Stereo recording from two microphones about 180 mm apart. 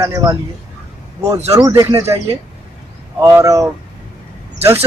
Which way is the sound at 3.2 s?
15° right (ahead or behind).